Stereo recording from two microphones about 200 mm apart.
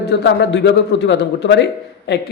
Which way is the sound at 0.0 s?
60° left (ahead or behind).